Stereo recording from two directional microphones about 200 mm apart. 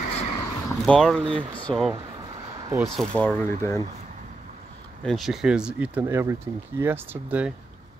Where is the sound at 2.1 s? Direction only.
20° right (ahead or behind).